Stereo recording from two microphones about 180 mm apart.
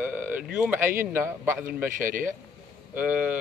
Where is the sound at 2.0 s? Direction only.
50° right (ahead or behind).